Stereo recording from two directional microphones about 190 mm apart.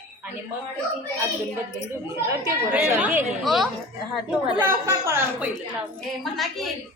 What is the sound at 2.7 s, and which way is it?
A woman's voice, 10° right (ahead or behind).